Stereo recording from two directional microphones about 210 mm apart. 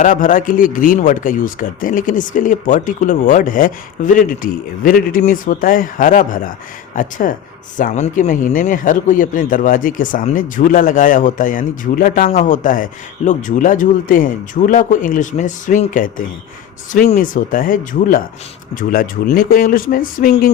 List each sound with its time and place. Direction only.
0.0 s a man's voice: 40° left (ahead or behind)